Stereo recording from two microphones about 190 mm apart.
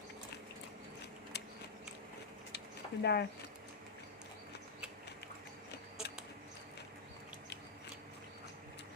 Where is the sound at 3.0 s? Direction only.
60° left (ahead or behind).